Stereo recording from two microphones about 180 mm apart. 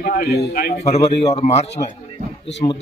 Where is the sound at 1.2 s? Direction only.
35° left (ahead or behind).